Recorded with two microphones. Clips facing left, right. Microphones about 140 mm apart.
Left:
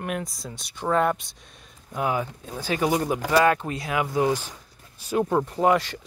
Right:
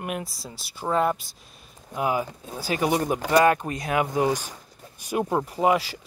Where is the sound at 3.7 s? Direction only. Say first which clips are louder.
Right 2 dB; 45° right (ahead or behind).